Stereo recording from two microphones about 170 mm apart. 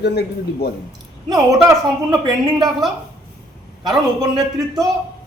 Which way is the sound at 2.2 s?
25° right (ahead or behind).